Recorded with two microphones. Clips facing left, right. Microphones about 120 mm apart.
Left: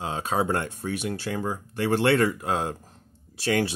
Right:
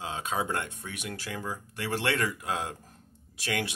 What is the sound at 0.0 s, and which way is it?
Speech, 35° left (ahead or behind).